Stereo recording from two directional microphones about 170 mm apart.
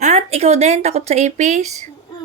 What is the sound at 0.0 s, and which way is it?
Speech, 40° right (ahead or behind).